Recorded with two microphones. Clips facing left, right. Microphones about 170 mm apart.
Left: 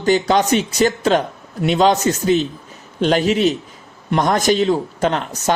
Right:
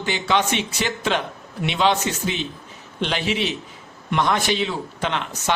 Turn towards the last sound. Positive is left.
turn(degrees=40)  # may be behind; listen again after turning